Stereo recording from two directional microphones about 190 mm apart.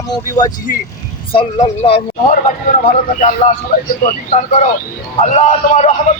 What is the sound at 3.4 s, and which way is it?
Speech, 30° left (ahead or behind).